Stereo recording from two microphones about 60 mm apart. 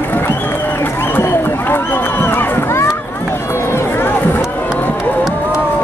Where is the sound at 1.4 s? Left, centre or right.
Left.